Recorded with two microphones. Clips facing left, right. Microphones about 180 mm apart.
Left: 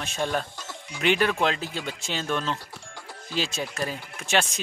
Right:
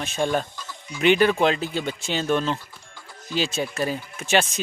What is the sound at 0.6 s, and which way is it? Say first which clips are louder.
Music: right 1 dB; 70° left (ahead or behind).